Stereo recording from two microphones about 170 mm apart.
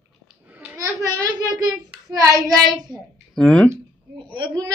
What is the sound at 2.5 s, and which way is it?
Child singing, 25° right (ahead or behind).